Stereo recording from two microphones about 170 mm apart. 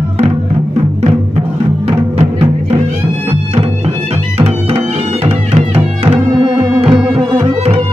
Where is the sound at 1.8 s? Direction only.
35° right (ahead or behind).